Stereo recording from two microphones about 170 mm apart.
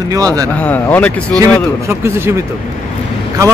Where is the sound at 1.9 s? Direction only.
15° right (ahead or behind).